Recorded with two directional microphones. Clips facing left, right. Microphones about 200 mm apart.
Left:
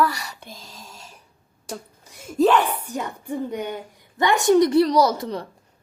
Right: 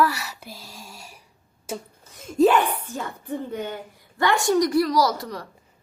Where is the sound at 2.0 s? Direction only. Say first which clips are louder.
Right 1 dB; 10° left (ahead or behind).